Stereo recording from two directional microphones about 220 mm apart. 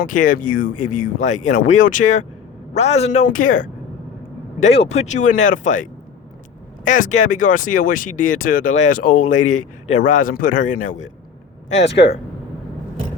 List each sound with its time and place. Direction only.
0.0 s speech: 40° left (ahead or behind)
6.8 s speech: 35° left (ahead or behind)
11.8 s speech: 50° left (ahead or behind)